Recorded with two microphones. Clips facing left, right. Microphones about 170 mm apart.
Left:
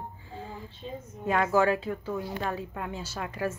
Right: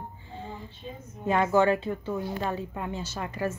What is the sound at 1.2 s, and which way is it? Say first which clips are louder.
A woman's voice: right 2 dB; centre (ahead or behind).